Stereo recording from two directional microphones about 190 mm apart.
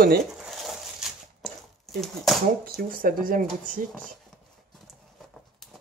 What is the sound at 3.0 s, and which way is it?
Speech, 45° right (ahead or behind).